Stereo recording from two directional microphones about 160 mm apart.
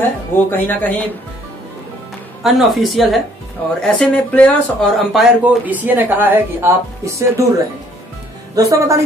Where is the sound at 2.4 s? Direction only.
Centre (ahead or behind).